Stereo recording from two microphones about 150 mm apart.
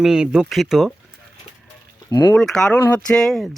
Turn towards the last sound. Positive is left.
turn(degrees=0)  # may be behind; listen again after turning